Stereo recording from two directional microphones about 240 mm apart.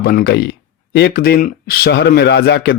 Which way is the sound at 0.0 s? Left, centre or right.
Left.